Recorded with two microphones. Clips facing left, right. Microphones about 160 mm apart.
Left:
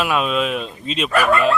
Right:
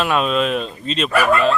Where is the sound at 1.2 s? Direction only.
10° right (ahead or behind).